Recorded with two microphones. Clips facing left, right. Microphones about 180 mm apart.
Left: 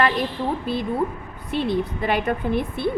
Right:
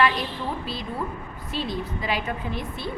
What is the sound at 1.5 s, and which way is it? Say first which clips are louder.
A woman's voice: left 7 dB; 60° left (ahead or behind).